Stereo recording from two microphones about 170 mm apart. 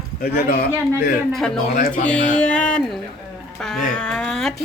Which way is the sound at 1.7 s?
55° left (ahead or behind).